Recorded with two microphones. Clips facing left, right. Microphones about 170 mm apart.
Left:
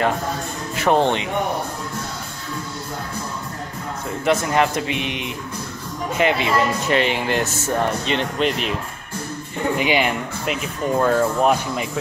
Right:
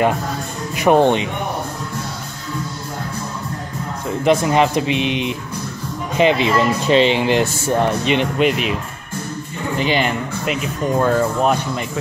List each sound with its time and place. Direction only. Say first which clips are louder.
0.7 s speech: right 4 dB; 15° right (ahead or behind)
4.2 s speech: right 4 dB; 20° right (ahead or behind)
9.8 s speech: right 3 dB; 10° left (ahead or behind)